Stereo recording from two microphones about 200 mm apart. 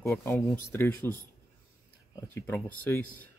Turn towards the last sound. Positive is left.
turn(degrees=10)  # may be behind; listen again after turning